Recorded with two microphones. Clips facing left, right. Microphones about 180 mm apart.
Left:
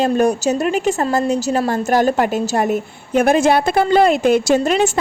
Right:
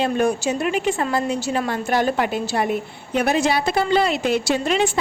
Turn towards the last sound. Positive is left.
turn(degrees=45)  # may be behind; listen again after turning